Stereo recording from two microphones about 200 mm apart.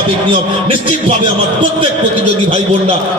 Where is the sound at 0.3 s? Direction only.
25° right (ahead or behind).